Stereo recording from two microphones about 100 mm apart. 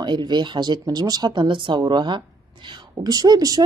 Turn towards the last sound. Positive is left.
turn(degrees=-40)  # may be behind; listen again after turning